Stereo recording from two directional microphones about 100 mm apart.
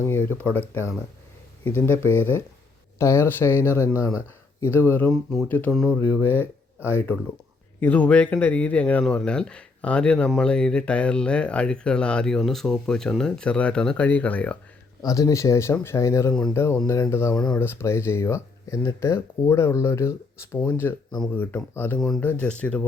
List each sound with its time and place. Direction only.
0.0 s speech: 20° left (ahead or behind)
5.0 s speech: centre (ahead or behind)
5.5 s speech: 20° left (ahead or behind)
5.7 s speech: centre (ahead or behind)
6.2 s speech: 20° left (ahead or behind)
15.0 s speech: 35° left (ahead or behind); by 21.9 s 20° left (ahead or behind)
21.9 s speech: centre (ahead or behind)
22.2 s speech: 20° left (ahead or behind)